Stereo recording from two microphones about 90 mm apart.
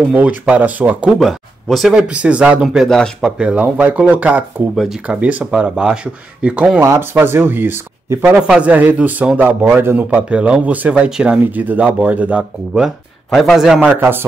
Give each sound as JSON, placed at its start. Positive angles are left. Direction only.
{"t": 0.1, "sound": "speech", "side_deg": -15}
{"t": 1.2, "sound": "speech", "side_deg": 0}
{"t": 2.0, "sound": "speech", "side_deg": -15}
{"t": 2.9, "sound": "speech", "side_deg": 5}
{"t": 3.3, "sound": "speech", "side_deg": -10}
{"t": 4.7, "sound": "speech", "side_deg": -5}
{"t": 7.0, "sound": "speech", "side_deg": -25}
{"t": 8.4, "sound": "speech", "side_deg": -10}
{"t": 13.3, "sound": "speech", "side_deg": 0}
{"t": 13.7, "sound": "speech", "side_deg": -20}